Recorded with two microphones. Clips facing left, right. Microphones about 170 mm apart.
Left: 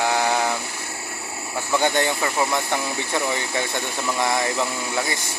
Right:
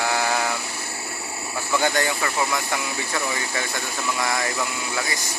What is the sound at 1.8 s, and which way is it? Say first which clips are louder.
Speech: left 2 dB; 20° left (ahead or behind).